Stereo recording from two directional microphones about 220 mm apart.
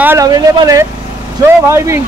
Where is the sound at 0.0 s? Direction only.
15° right (ahead or behind).